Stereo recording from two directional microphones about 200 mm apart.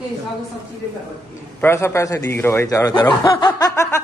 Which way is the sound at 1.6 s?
10° left (ahead or behind).